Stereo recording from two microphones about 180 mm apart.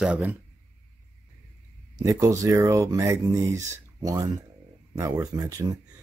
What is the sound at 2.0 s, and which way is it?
Speech, 15° right (ahead or behind).